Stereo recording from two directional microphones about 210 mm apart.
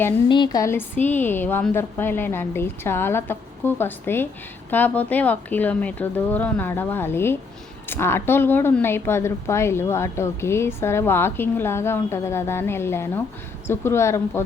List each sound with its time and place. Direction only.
0.3 s a woman's voice: 20° left (ahead or behind)